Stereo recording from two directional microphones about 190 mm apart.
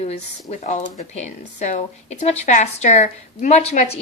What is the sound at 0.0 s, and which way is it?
A woman's voice, 35° left (ahead or behind).